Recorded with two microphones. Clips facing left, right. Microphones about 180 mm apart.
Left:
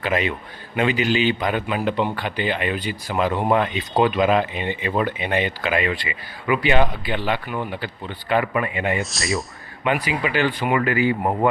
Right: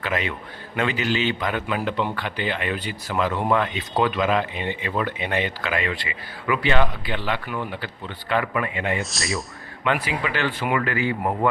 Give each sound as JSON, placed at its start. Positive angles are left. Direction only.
{"t": 0.0, "sound": "a man's voice", "side_deg": 20}
{"t": 9.0, "sound": "speech", "side_deg": 0}
{"t": 11.2, "sound": "a man's voice", "side_deg": 25}